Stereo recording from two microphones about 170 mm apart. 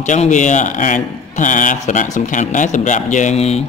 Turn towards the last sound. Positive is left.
turn(degrees=40)  # may be behind; listen again after turning